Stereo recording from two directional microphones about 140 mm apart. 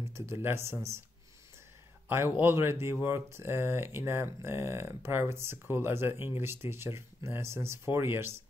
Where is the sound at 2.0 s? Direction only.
15° right (ahead or behind).